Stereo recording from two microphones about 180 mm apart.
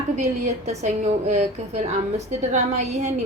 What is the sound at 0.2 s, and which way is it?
A woman's voice, 40° right (ahead or behind).